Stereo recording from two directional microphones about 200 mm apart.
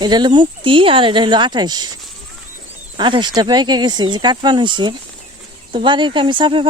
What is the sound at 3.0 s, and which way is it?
Speech, 25° right (ahead or behind).